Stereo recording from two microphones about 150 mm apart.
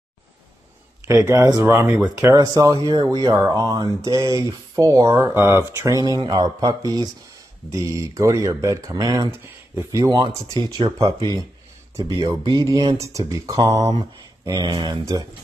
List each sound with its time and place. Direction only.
1.0 s speech: 20° right (ahead or behind)
2.4 s speech: 25° right (ahead or behind)
12.0 s speech: 20° right (ahead or behind)